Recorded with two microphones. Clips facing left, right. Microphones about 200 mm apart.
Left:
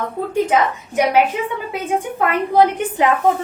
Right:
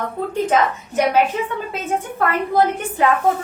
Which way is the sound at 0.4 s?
10° left (ahead or behind).